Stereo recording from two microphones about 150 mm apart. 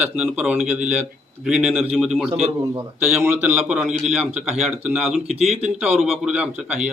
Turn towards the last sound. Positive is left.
turn(degrees=-5)  # may be behind; listen again after turning